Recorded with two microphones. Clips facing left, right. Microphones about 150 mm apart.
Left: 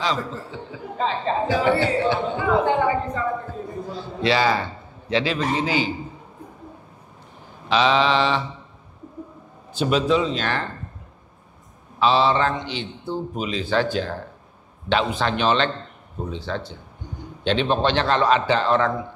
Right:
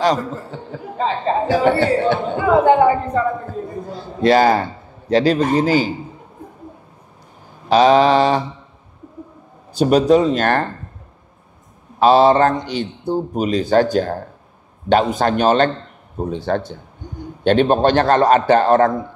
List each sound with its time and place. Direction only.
0.0 s a man's voice: 45° right (ahead or behind)
1.5 s a man's voice: 55° right (ahead or behind)
3.9 s a man's voice: 50° right (ahead or behind)
7.6 s a man's voice: 45° right (ahead or behind)
9.8 s a man's voice: 45° right (ahead or behind)
12.0 s a man's voice: 45° right (ahead or behind)